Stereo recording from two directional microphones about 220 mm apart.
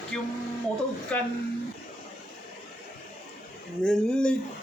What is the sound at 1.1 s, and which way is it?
Speech, 5° left (ahead or behind).